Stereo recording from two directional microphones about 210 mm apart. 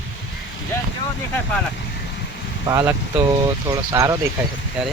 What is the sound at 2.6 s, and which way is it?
Speech, 15° right (ahead or behind).